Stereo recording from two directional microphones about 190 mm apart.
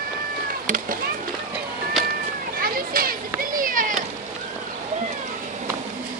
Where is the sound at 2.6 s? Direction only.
50° right (ahead or behind).